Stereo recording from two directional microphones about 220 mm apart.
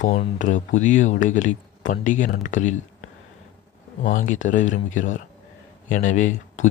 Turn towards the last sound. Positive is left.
turn(degrees=35)  # may be behind; listen again after turning